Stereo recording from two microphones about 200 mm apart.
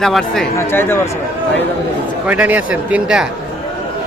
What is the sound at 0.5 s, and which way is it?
Speech, 10° left (ahead or behind).